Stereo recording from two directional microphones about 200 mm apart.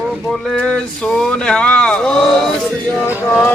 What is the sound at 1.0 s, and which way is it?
Speech, 5° left (ahead or behind).